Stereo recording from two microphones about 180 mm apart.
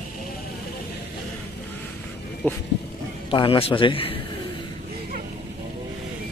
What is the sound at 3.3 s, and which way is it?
Speech, 30° left (ahead or behind).